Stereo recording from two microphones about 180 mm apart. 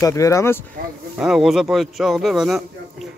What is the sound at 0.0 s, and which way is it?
Speech, 15° left (ahead or behind).